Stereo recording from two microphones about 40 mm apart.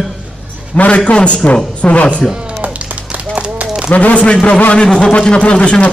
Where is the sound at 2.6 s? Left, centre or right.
Right.